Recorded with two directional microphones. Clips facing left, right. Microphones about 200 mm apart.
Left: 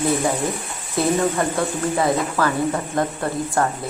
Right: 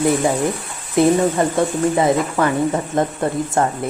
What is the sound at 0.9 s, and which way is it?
Speech, 20° right (ahead or behind).